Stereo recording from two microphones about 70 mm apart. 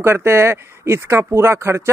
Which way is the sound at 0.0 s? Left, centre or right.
Right.